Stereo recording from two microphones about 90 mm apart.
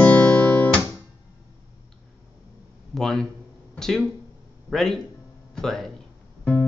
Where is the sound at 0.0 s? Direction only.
15° left (ahead or behind).